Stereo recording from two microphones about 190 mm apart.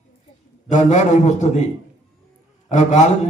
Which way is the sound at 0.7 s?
40° left (ahead or behind).